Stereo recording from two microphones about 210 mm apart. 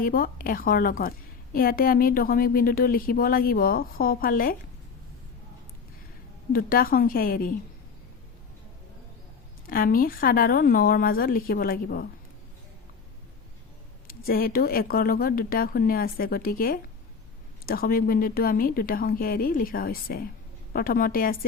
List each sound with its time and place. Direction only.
0.0 s speech: 40° left (ahead or behind)
6.5 s speech: 45° left (ahead or behind)
9.6 s speech: 45° left (ahead or behind)
14.3 s speech: 45° left (ahead or behind)